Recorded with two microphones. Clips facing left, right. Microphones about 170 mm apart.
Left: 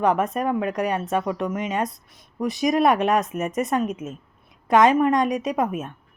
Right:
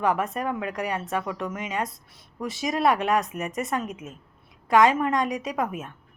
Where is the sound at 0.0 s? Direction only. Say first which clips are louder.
Left 4 dB; 20° left (ahead or behind).